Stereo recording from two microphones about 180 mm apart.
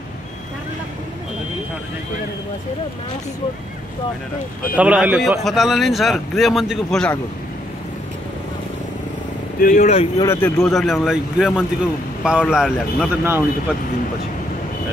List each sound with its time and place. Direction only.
4.7 s speech: 5° right (ahead or behind)
9.6 s speech: 45° left (ahead or behind)
10.1 s a man's voice: 15° left (ahead or behind)
10.6 s speech: centre (ahead or behind)